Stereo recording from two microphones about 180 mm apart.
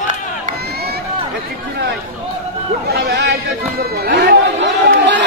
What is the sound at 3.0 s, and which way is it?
Chatter, 70° right (ahead or behind).